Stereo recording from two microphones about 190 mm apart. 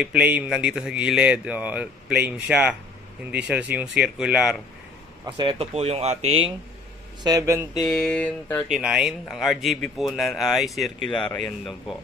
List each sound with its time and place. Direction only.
0.0 s speech: 10° right (ahead or behind)
5.2 s speech: 25° right (ahead or behind)
7.2 s speech: 15° right (ahead or behind)
7.8 s speech: 5° left (ahead or behind)
8.6 s speech: 5° right (ahead or behind)